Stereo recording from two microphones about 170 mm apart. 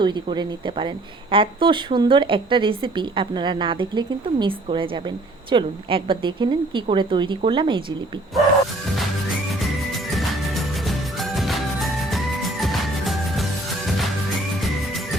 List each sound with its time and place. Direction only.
0.0 s speech: 25° right (ahead or behind)
9.6 s music: centre (ahead or behind)